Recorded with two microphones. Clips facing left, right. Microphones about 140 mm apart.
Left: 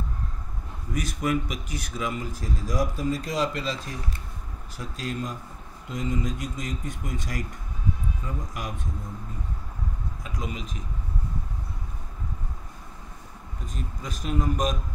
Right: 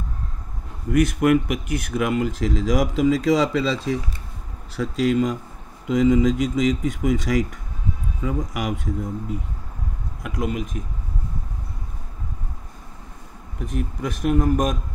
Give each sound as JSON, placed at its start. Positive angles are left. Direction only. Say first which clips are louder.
{"t": 0.8, "sound": "speech", "louder": "right 10 dB", "side_deg": -65}
{"t": 10.2, "sound": "a man's voice", "louder": "right 10 dB", "side_deg": -65}
{"t": 13.6, "sound": "a man's voice", "louder": "right 11 dB", "side_deg": -65}